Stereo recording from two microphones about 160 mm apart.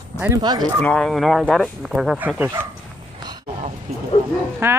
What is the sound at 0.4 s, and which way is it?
Speech, 25° right (ahead or behind).